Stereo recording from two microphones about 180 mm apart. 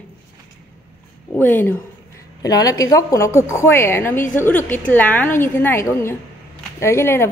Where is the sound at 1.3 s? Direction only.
10° left (ahead or behind).